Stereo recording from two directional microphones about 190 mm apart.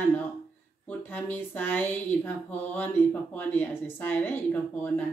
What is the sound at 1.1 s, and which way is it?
Speech, 10° left (ahead or behind).